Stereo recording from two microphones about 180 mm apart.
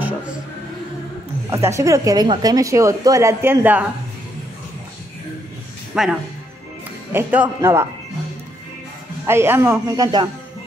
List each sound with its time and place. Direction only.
1.5 s a woman's voice: 15° right (ahead or behind)
5.9 s a woman's voice: 5° right (ahead or behind)
9.2 s a woman's voice: 15° right (ahead or behind)